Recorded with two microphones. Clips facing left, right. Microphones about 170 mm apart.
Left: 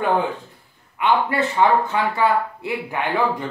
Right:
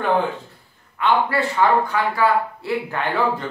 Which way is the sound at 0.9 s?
20° left (ahead or behind).